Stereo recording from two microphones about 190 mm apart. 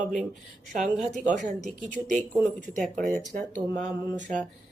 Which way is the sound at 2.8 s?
10° left (ahead or behind).